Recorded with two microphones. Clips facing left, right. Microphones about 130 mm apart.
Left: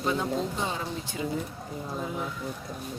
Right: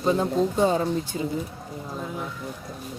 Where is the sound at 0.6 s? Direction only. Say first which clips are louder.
Right 10 dB; 40° right (ahead or behind).